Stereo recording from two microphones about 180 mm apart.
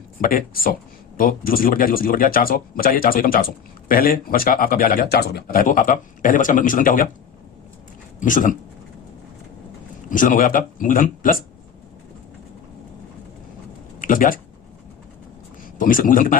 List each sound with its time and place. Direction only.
0.2 s speech: 55° left (ahead or behind)
8.2 s speech: 45° left (ahead or behind)
10.1 s speech: 45° left (ahead or behind)
14.0 s speech: 50° left (ahead or behind)
15.8 s speech: 50° left (ahead or behind)